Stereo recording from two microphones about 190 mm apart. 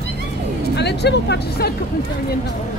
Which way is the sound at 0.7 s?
60° left (ahead or behind).